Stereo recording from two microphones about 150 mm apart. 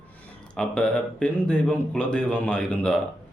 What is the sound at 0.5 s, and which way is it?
Speech, 5° left (ahead or behind).